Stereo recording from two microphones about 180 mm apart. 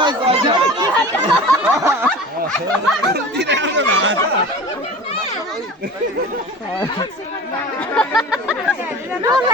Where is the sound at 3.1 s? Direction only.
65° right (ahead or behind); by 4.2 s 90° right.